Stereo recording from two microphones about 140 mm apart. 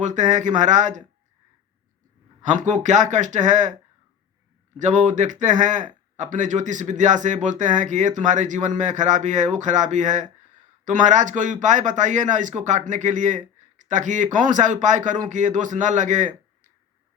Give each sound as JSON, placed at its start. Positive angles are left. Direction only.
{"t": 0.0, "sound": "speech", "side_deg": -60}
{"t": 2.4, "sound": "speech", "side_deg": -65}
{"t": 4.8, "sound": "speech", "side_deg": -60}